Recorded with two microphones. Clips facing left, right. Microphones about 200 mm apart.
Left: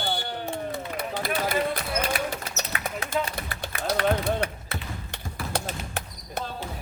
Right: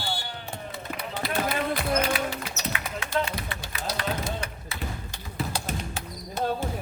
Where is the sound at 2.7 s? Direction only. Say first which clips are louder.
Even; 40° left (ahead or behind); by 4.7 s 60° left (ahead or behind).